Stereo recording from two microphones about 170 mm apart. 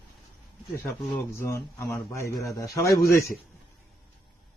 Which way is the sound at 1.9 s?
15° left (ahead or behind).